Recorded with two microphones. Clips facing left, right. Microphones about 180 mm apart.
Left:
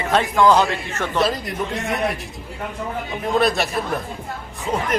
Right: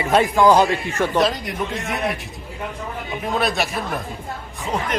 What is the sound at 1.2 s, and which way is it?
Speech, centre (ahead or behind).